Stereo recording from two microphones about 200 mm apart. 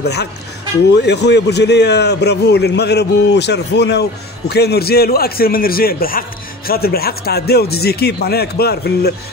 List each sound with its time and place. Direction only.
0.0 s a man's voice: 55° left (ahead or behind)